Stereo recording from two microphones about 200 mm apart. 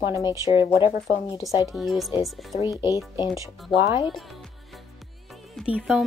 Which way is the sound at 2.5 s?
25° left (ahead or behind).